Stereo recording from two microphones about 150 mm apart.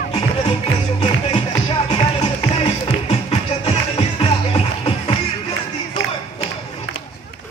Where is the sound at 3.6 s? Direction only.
40° left (ahead or behind).